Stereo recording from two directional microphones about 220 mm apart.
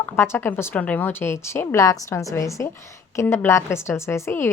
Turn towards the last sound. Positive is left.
turn(degrees=10)  # may be behind; listen again after turning